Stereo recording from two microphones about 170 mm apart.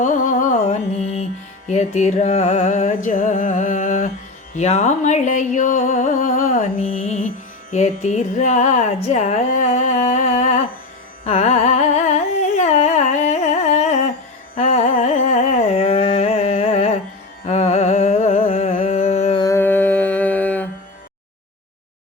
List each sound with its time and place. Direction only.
0.0 s carnatic music: 50° left (ahead or behind)
1.6 s a sound: 40° left (ahead or behind)
11.2 s carnatic music: 40° left (ahead or behind)
17.4 s humming: 40° left (ahead or behind)
19.4 s mantra: 15° left (ahead or behind)